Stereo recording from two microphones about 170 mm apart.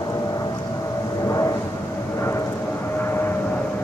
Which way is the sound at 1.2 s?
20° left (ahead or behind).